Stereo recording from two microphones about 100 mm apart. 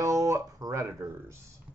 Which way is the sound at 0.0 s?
35° right (ahead or behind).